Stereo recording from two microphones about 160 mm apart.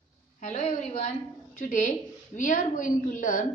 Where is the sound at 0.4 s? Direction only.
45° left (ahead or behind).